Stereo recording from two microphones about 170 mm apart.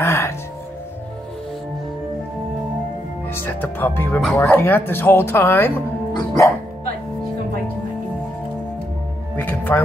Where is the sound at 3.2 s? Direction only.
10° left (ahead or behind).